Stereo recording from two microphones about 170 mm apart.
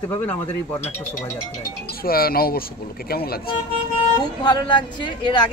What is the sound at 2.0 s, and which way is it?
Speech, 60° left (ahead or behind).